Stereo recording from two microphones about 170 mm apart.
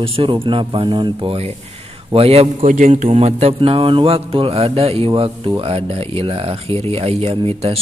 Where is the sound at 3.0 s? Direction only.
40° right (ahead or behind).